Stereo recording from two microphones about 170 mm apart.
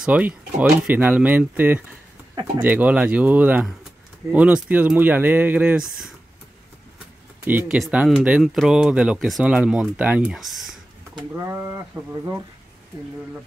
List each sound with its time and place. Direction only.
0.0 s speech: 10° right (ahead or behind)
7.4 s speech: 10° right (ahead or behind)
11.1 s speech: 15° right (ahead or behind)